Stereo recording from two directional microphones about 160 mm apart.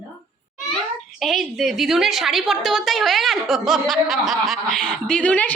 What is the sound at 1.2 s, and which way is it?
A woman's voice, centre (ahead or behind).